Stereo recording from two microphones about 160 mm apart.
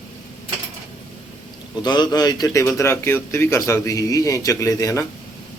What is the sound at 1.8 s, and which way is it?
A man's voice, 25° left (ahead or behind).